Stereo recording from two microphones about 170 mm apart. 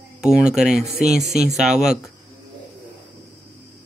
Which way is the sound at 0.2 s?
5° right (ahead or behind).